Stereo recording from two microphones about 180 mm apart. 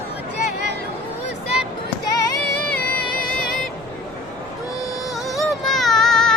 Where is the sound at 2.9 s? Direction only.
55° right (ahead or behind).